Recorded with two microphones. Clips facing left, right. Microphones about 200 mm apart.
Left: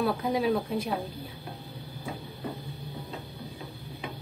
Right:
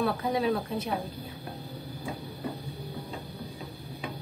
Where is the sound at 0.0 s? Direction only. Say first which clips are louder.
Left 1 dB; 5° left (ahead or behind).